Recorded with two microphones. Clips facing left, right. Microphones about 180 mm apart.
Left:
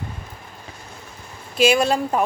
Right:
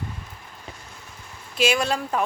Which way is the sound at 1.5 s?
45° left (ahead or behind).